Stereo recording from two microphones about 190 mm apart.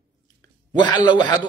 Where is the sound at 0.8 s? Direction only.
25° left (ahead or behind).